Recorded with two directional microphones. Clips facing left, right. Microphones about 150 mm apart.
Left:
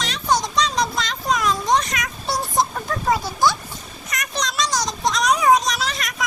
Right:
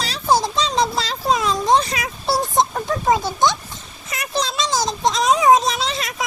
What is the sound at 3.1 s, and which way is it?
Speech, 20° right (ahead or behind).